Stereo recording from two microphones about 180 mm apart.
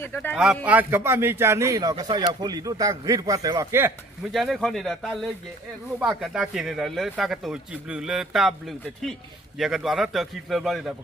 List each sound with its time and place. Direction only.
0.0 s speech: 10° left (ahead or behind)
0.7 s a man's voice: 10° right (ahead or behind)
4.3 s speech: centre (ahead or behind)